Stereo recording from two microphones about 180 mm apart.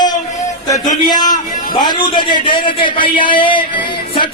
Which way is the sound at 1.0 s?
20° left (ahead or behind).